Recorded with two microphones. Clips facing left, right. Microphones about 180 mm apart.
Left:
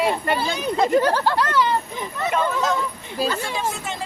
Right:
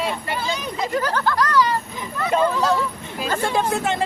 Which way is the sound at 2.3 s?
35° right (ahead or behind).